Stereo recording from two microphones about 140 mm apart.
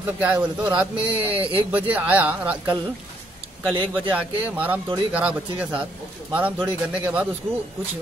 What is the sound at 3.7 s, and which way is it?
Speech, 35° right (ahead or behind).